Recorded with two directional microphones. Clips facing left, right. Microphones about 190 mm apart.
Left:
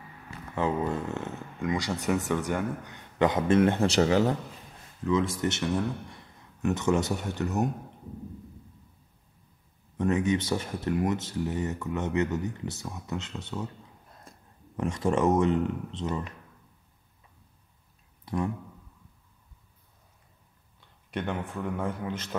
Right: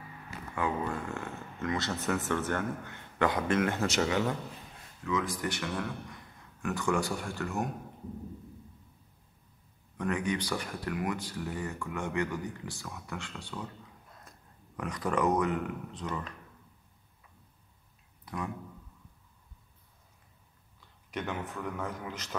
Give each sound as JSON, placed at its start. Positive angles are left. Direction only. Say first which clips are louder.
{"t": 0.6, "sound": "speech", "louder": "left 5 dB", "side_deg": 25}
{"t": 9.9, "sound": "speech", "louder": "left 6 dB", "side_deg": 20}
{"t": 14.8, "sound": "speech", "louder": "left 4 dB", "side_deg": 25}
{"t": 18.2, "sound": "a sound", "louder": "left 8 dB", "side_deg": 30}
{"t": 21.1, "sound": "speech", "louder": "left 4 dB", "side_deg": 30}